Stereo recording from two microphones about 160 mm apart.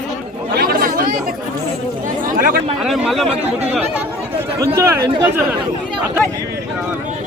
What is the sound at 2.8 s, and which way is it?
Speech, centre (ahead or behind).